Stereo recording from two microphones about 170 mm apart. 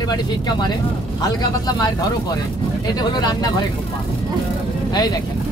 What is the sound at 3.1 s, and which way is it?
Speech, 25° left (ahead or behind).